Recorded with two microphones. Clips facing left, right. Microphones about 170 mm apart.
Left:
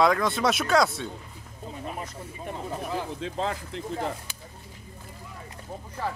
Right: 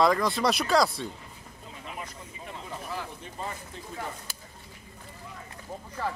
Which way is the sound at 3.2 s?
90° left.